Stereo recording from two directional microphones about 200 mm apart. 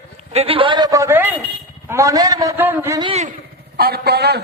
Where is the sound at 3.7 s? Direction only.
50° right (ahead or behind).